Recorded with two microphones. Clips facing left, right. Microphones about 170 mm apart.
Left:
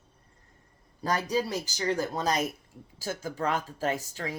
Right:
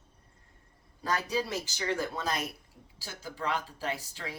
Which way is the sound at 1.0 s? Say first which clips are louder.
Left 3 dB; 40° left (ahead or behind).